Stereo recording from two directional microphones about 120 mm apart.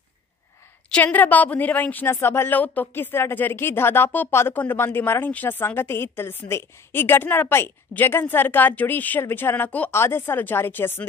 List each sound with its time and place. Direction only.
0.8 s a woman's voice: 10° left (ahead or behind)